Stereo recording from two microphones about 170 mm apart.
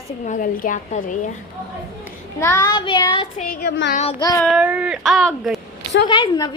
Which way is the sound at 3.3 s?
60° left (ahead or behind).